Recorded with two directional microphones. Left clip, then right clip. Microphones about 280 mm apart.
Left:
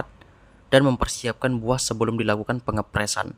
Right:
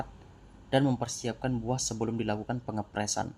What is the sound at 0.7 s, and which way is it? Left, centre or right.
Speech, left.